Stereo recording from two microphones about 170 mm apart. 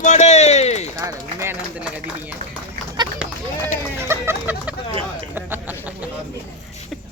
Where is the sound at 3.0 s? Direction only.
25° right (ahead or behind).